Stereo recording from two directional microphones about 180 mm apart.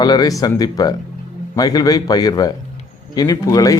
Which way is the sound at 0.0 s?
20° left (ahead or behind).